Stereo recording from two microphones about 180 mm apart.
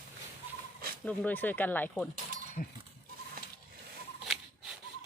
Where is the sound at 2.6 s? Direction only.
50° left (ahead or behind).